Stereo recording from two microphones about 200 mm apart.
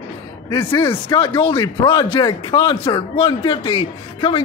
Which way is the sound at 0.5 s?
25° left (ahead or behind).